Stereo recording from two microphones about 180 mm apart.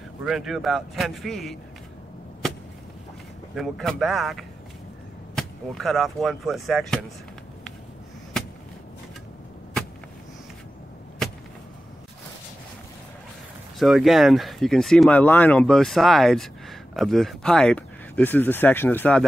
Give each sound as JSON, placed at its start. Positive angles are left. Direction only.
{"t": 0.2, "sound": "speech", "side_deg": 0}
{"t": 3.5, "sound": "speech", "side_deg": 0}
{"t": 13.7, "sound": "speech", "side_deg": 0}